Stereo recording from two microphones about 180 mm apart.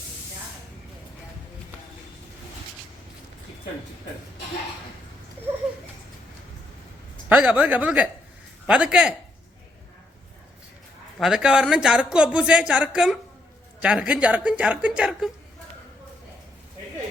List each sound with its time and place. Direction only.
7.3 s speech: 10° right (ahead or behind)
11.2 s speech: centre (ahead or behind)